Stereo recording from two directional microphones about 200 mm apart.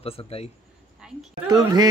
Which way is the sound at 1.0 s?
5° right (ahead or behind).